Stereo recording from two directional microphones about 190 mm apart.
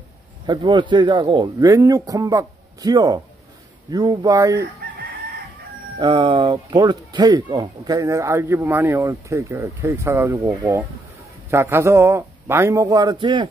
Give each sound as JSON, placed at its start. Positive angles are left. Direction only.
{"t": 0.5, "sound": "speech", "side_deg": -25}
{"t": 5.9, "sound": "speech", "side_deg": -25}